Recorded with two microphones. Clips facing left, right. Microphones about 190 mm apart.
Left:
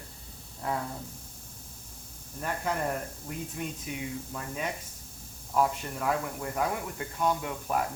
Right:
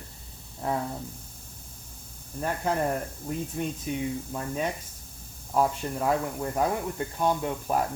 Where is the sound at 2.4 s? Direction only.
30° right (ahead or behind).